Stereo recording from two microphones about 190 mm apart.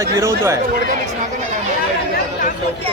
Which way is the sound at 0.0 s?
15° right (ahead or behind).